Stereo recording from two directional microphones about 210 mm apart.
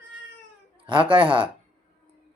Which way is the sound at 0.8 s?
25° right (ahead or behind).